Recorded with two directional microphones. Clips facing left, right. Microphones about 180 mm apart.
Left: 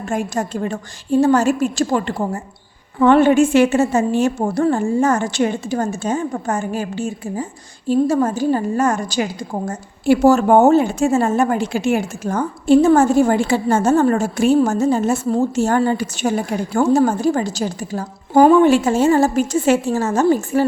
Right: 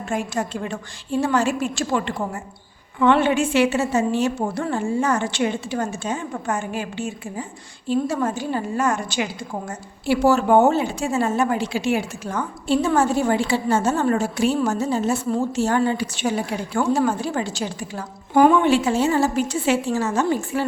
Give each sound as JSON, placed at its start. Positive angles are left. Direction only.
{"t": 0.1, "sound": "a woman's voice", "side_deg": 45}